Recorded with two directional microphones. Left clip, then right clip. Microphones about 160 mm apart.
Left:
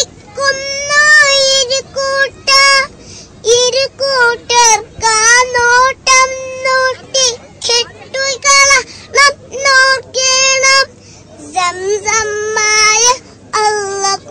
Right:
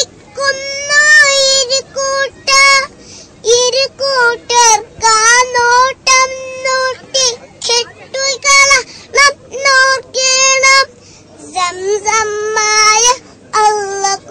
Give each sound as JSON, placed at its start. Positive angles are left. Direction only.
{"t": 0.0, "sound": "child singing", "side_deg": 0}